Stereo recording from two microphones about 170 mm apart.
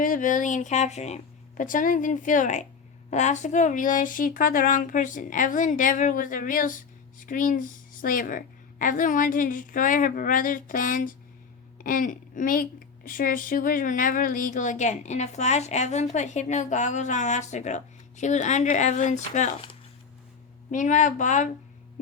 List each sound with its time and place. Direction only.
0.0 s speech: 50° left (ahead or behind)
20.7 s speech: 45° left (ahead or behind)